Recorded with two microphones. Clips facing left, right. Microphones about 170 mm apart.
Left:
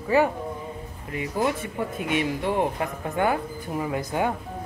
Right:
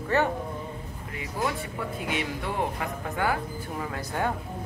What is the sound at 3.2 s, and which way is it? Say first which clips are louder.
A woman's voice: left 4 dB; 20° left (ahead or behind).